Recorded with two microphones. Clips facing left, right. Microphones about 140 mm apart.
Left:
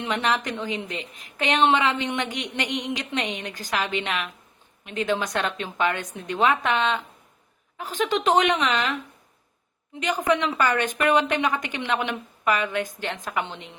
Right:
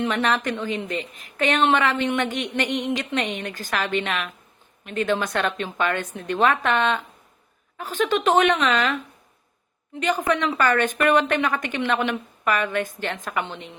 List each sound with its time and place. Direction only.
0.0 s a woman's voice: 15° left (ahead or behind)
2.6 s speech: 55° right (ahead or behind)
3.2 s a woman's voice: 15° left (ahead or behind)
10.0 s a woman's voice: 15° left (ahead or behind)